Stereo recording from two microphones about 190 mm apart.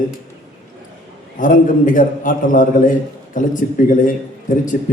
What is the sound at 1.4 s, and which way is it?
A man's voice, 45° left (ahead or behind).